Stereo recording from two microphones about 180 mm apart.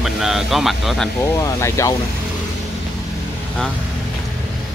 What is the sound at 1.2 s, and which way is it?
Speech, 15° left (ahead or behind).